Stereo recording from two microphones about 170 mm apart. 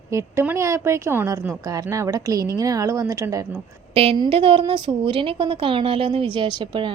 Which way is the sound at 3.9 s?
35° right (ahead or behind).